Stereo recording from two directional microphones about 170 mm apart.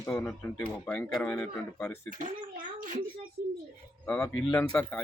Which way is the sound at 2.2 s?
50° right (ahead or behind).